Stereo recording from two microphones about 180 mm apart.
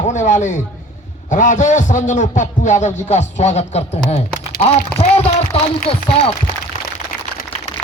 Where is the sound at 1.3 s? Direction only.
45° left (ahead or behind).